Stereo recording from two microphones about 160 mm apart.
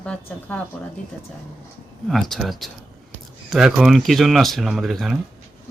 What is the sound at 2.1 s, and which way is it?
Speech, centre (ahead or behind).